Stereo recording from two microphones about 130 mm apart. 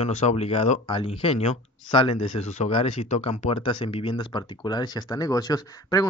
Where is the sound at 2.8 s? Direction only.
50° left (ahead or behind); by 6.1 s 30° left (ahead or behind).